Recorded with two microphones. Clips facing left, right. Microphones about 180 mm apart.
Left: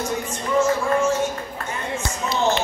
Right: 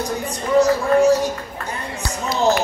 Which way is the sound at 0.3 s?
35° right (ahead or behind).